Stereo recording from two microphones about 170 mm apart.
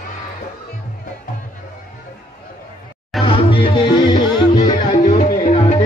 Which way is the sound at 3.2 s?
30° left (ahead or behind).